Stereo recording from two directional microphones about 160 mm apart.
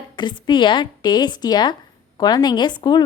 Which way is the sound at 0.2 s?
30° left (ahead or behind).